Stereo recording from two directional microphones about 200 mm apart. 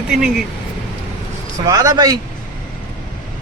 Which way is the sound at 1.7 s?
20° right (ahead or behind).